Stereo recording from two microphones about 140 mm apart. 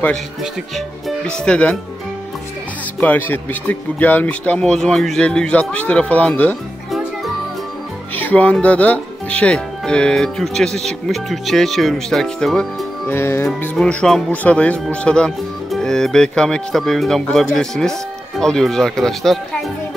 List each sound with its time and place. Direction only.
0.4 s speech: centre (ahead or behind)
3.0 s speech: 15° left (ahead or behind)
8.2 s speech: 10° left (ahead or behind)
13.1 s speech: 15° left (ahead or behind)
13.6 s speech: 5° left (ahead or behind)